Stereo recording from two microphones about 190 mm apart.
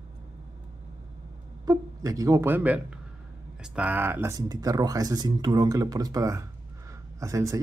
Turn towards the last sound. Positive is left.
turn(degrees=-15)  # may be behind; listen again after turning